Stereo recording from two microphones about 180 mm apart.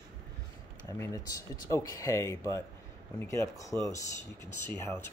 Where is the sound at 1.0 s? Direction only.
15° left (ahead or behind).